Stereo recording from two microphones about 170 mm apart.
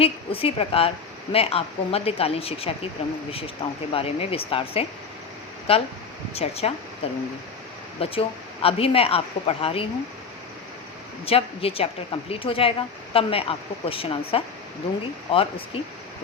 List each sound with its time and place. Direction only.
0.0 s a woman's voice: 35° left (ahead or behind)
11.3 s a woman's voice: 35° left (ahead or behind)